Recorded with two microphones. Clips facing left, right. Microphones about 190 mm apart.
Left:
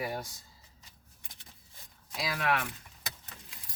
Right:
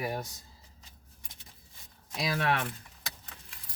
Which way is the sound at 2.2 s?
30° right (ahead or behind).